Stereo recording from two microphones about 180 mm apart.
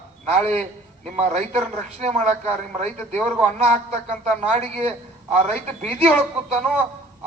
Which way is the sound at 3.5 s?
35° right (ahead or behind).